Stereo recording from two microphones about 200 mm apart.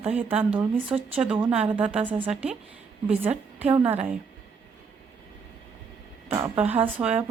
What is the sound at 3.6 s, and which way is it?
Speech, 25° right (ahead or behind).